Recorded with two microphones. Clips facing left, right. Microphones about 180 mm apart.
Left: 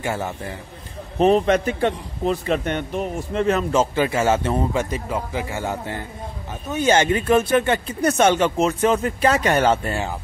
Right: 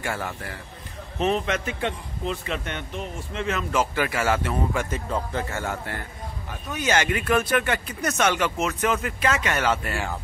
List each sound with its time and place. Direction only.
0.0 s speech: 20° left (ahead or behind)
1.1 s a man's voice: 35° left (ahead or behind)
3.7 s speech: 25° left (ahead or behind)
4.9 s speech: 10° left (ahead or behind); by 10.1 s 25° left (ahead or behind)